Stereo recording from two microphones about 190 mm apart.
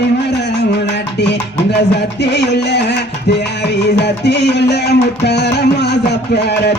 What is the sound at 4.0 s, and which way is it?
Music, 60° left (ahead or behind).